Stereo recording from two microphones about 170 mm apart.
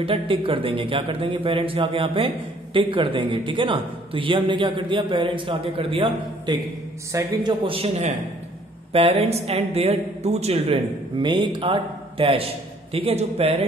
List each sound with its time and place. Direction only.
0.0 s a man's voice: 30° right (ahead or behind)
7.6 s a man's voice: 35° right (ahead or behind)
8.9 s a man's voice: 35° right (ahead or behind)